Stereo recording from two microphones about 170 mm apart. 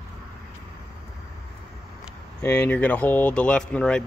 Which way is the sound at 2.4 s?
10° left (ahead or behind).